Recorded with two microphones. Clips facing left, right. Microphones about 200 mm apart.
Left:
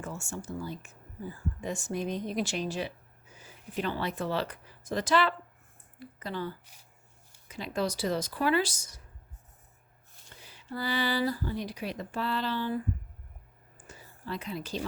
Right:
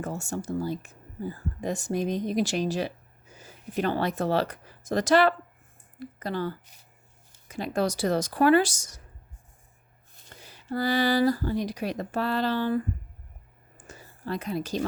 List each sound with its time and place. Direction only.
0.0 s speech: 40° right (ahead or behind)
7.4 s a sound: 45° right (ahead or behind)
7.9 s speech: 70° right (ahead or behind)
10.2 s speech: 45° right (ahead or behind)
13.8 s whispering: 45° right (ahead or behind)